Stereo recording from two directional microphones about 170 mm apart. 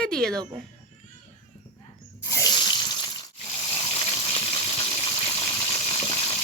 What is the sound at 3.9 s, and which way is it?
Water, 35° left (ahead or behind).